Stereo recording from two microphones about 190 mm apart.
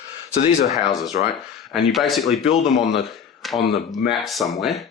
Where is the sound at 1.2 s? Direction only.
50° left (ahead or behind).